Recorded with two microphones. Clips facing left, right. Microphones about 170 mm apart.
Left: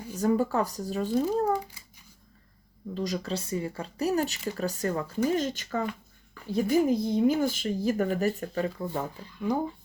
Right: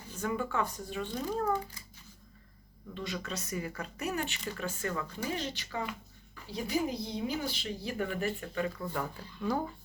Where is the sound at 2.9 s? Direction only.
35° left (ahead or behind).